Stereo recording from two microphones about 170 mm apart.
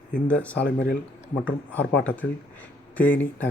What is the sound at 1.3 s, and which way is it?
Speech, 10° left (ahead or behind).